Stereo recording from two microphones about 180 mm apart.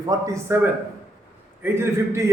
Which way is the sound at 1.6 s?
15° right (ahead or behind).